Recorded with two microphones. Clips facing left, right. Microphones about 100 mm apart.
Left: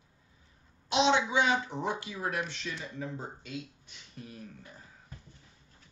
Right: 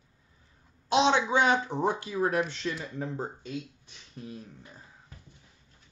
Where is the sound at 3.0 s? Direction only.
35° right (ahead or behind).